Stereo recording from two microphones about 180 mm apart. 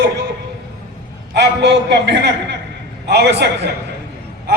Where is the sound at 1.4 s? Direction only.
70° right (ahead or behind).